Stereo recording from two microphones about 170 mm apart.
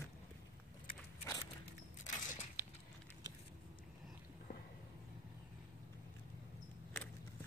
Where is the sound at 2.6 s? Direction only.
10° right (ahead or behind).